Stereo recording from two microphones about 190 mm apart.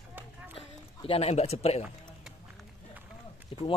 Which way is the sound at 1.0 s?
30° left (ahead or behind).